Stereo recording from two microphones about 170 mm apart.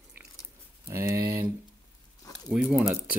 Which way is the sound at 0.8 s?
15° right (ahead or behind).